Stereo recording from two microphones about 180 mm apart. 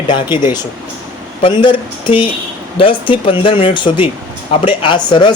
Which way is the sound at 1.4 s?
25° left (ahead or behind).